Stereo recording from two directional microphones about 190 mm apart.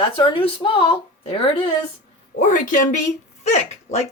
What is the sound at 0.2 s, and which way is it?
A woman's voice, 25° left (ahead or behind).